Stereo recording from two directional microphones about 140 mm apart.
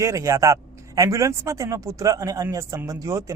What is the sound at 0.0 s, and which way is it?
Speech, 25° right (ahead or behind).